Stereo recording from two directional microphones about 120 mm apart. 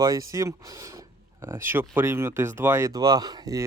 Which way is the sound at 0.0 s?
30° right (ahead or behind).